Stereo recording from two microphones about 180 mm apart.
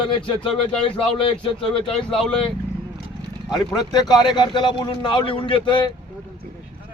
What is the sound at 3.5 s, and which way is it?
A man's voice, 20° left (ahead or behind).